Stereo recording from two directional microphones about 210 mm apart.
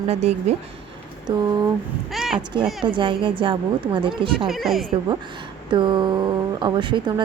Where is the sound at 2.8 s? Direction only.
25° right (ahead or behind).